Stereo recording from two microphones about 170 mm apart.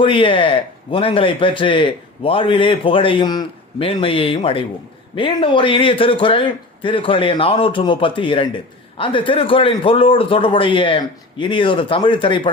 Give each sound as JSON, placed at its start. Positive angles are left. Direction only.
{"t": 0.0, "sound": "a man's voice", "side_deg": 30}